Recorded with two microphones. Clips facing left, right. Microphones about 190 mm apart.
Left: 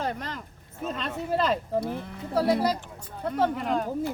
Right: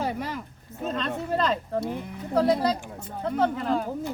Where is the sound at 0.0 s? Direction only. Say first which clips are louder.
Right 2 dB; 10° right (ahead or behind).